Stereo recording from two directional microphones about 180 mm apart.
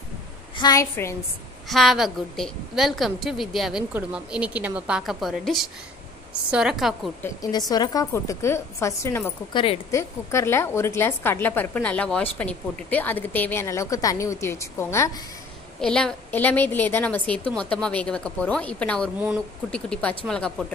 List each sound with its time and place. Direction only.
0.6 s a woman's voice: 20° left (ahead or behind)
1.7 s a woman's voice: centre (ahead or behind)
7.7 s a woman's voice: 20° left (ahead or behind)
9.5 s a woman's voice: 25° left (ahead or behind)
9.9 s a woman's voice: 15° left (ahead or behind)
15.8 s a woman's voice: 5° left (ahead or behind)